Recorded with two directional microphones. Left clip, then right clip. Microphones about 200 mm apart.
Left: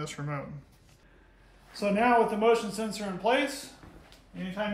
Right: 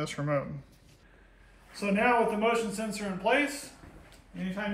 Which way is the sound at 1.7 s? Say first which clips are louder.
Left 2 dB; 60° left (ahead or behind).